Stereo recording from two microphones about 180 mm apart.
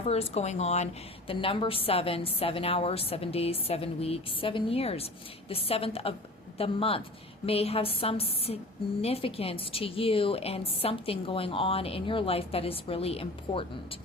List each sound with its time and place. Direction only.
0.0 s speech: 35° left (ahead or behind)